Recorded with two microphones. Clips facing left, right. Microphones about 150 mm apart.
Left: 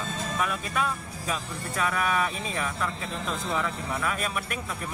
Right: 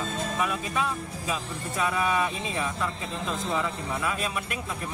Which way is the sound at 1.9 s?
15° right (ahead or behind).